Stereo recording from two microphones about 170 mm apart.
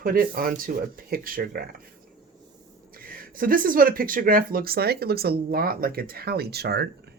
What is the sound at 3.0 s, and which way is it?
Speech, 55° right (ahead or behind).